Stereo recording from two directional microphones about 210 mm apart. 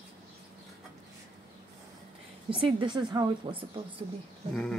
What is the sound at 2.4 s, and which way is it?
A woman's voice, 25° right (ahead or behind).